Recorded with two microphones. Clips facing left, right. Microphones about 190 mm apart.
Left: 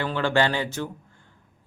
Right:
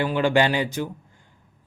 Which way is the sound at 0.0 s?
15° right (ahead or behind).